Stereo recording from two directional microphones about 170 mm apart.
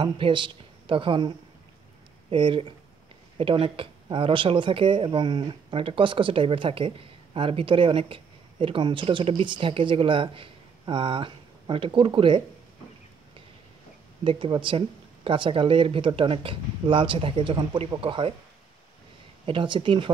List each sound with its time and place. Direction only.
0.0 s speech: 30° right (ahead or behind)
2.3 s speech: 30° right (ahead or behind)
14.2 s speech: 30° right (ahead or behind)
19.4 s speech: 30° right (ahead or behind)